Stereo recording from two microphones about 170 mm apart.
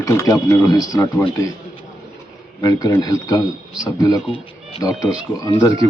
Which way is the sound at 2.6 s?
20° left (ahead or behind).